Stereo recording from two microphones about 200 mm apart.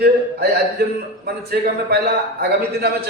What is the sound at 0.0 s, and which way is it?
A man's voice, 50° right (ahead or behind).